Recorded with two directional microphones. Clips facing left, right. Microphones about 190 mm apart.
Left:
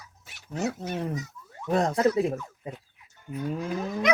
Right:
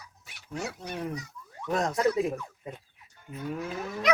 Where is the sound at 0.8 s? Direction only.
20° left (ahead or behind).